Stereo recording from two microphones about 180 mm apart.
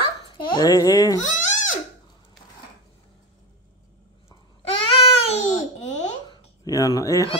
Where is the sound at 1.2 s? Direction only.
45° left (ahead or behind).